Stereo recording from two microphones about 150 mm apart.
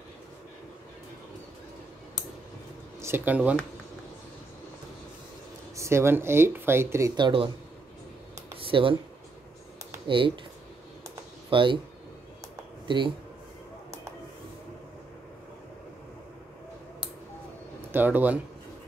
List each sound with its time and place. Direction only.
3.0 s speech: 15° right (ahead or behind)
5.8 s speech: 20° right (ahead or behind)
8.5 s a sound: 35° right (ahead or behind)
10.0 s speech: 35° right (ahead or behind)
11.5 s speech: 35° right (ahead or behind)
12.8 s speech: 30° right (ahead or behind)
17.9 s speech: 10° right (ahead or behind)